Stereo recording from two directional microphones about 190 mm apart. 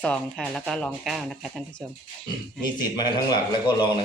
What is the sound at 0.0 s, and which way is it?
Speech, 5° left (ahead or behind).